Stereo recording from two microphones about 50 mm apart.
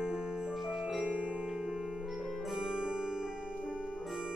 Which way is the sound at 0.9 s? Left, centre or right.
Centre.